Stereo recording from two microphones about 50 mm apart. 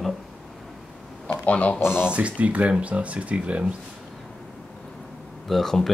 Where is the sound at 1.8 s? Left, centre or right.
Left.